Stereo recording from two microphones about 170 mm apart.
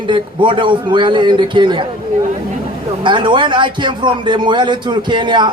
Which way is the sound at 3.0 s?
30° right (ahead or behind).